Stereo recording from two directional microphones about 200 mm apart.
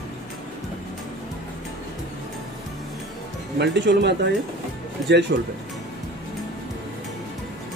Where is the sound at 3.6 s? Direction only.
60° right (ahead or behind).